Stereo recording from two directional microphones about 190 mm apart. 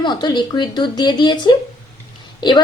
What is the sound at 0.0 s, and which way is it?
A woman's voice, 25° left (ahead or behind).